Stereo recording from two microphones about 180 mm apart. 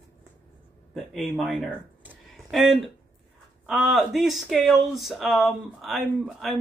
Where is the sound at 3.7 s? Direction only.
Centre (ahead or behind).